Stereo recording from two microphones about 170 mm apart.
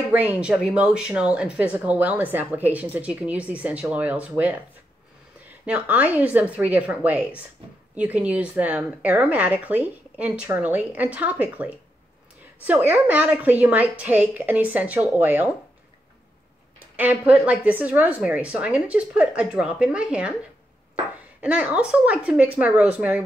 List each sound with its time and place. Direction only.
0.1 s a woman's voice: 10° right (ahead or behind)
5.7 s a woman's voice: 10° right (ahead or behind)
16.9 s a woman's voice: 10° right (ahead or behind)
21.4 s a woman's voice: 5° right (ahead or behind)